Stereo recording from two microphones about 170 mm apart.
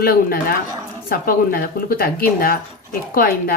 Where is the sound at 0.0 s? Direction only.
60° left (ahead or behind).